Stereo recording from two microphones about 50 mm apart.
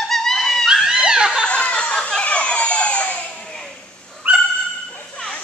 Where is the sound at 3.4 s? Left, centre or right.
Centre.